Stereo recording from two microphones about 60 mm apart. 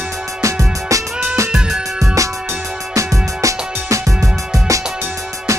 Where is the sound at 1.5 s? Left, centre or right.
Centre.